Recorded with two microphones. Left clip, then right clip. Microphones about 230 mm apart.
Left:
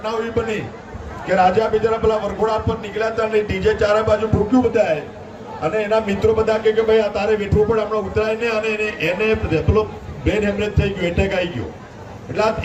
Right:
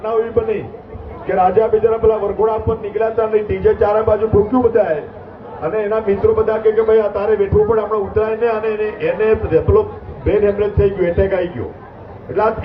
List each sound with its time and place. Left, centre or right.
0.0 s a man's voice: left